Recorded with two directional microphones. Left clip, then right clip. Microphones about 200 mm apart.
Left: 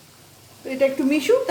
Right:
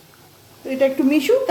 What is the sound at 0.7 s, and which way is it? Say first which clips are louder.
Speech: right 3 dB; 10° right (ahead or behind).